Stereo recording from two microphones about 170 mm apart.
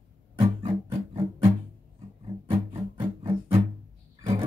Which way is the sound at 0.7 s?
20° right (ahead or behind).